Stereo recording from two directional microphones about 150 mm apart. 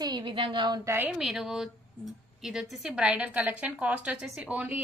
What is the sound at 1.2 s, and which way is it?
A woman's voice, 5° right (ahead or behind).